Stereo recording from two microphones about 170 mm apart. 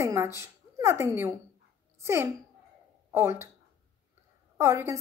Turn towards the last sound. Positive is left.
turn(degrees=-15)  # may be behind; listen again after turning